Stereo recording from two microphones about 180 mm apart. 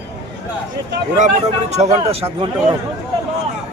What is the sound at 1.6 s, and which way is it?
Speech, 40° right (ahead or behind).